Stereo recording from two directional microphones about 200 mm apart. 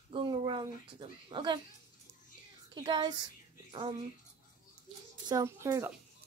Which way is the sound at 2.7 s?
20° right (ahead or behind).